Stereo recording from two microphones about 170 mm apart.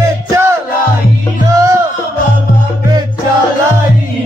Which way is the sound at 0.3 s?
15° right (ahead or behind).